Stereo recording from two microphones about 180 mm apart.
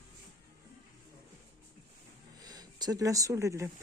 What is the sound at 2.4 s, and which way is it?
Speech, 20° right (ahead or behind).